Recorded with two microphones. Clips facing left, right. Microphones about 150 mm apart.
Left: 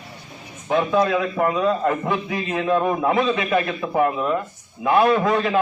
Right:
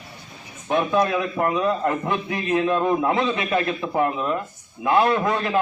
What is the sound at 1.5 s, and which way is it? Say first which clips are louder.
Speech: left 1 dB; 15° right (ahead or behind).